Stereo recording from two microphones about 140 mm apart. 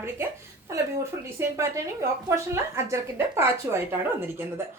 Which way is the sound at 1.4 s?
20° right (ahead or behind).